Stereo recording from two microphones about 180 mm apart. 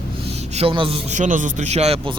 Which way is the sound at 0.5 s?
30° right (ahead or behind).